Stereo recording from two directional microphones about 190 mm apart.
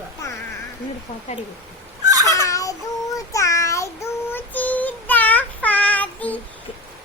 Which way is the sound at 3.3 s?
15° left (ahead or behind).